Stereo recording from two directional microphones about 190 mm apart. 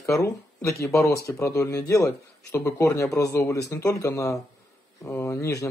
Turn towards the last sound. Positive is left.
turn(degrees=15)  # may be behind; listen again after turning